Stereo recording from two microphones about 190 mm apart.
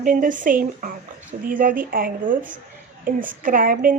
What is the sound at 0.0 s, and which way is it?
A woman's voice, 45° right (ahead or behind).